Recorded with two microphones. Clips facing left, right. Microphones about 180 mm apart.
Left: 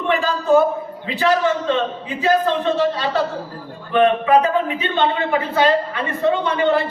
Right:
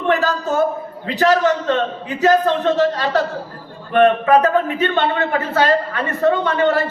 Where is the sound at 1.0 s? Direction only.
40° right (ahead or behind).